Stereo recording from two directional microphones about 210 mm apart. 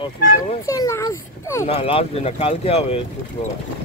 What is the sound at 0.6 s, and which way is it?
A child's voice, 15° left (ahead or behind).